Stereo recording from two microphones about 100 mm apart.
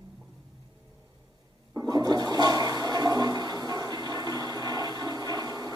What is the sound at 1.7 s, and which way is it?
Toilet flush, 45° right (ahead or behind).